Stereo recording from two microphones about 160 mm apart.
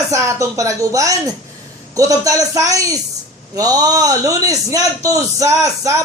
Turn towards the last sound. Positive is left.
turn(degrees=-20)  # may be behind; listen again after turning